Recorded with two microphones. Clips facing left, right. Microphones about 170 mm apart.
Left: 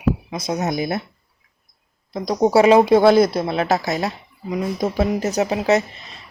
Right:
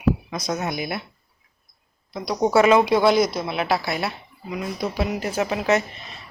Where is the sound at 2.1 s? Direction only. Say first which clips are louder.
Left 4 dB; 45° left (ahead or behind).